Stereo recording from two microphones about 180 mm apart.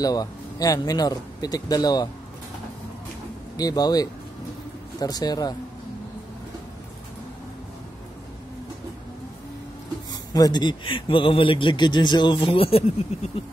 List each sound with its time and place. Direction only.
0.0 s a man's voice: 20° left (ahead or behind)
3.5 s a man's voice: 20° left (ahead or behind)
10.3 s a man's voice: 20° left (ahead or behind)